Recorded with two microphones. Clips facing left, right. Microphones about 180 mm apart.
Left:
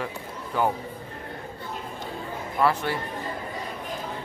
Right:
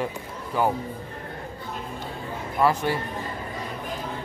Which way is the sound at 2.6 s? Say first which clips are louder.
Right 2 dB; 15° right (ahead or behind).